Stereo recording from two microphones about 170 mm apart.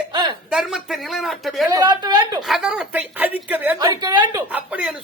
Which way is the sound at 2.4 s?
5° right (ahead or behind).